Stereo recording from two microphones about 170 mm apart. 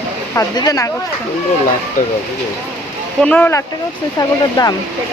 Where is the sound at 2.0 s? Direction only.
50° left (ahead or behind).